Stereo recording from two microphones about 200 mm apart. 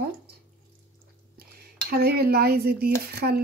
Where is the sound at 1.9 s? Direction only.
50° right (ahead or behind).